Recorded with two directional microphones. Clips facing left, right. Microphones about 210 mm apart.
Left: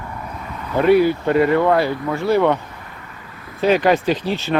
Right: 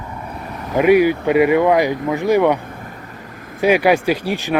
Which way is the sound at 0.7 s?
15° right (ahead or behind).